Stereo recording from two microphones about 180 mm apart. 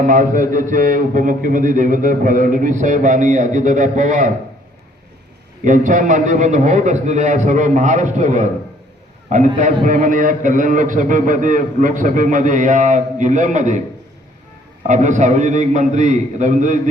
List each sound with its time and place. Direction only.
0.0 s a man's voice: 45° right (ahead or behind)
5.6 s a man's voice: 45° right (ahead or behind)
9.6 s a man's voice: 45° right (ahead or behind)
14.8 s a man's voice: 40° right (ahead or behind)